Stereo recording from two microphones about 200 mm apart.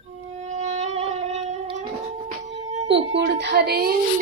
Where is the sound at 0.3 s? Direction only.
35° right (ahead or behind).